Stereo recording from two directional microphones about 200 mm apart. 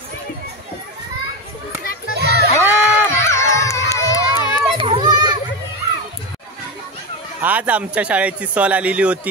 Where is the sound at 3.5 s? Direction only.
15° left (ahead or behind).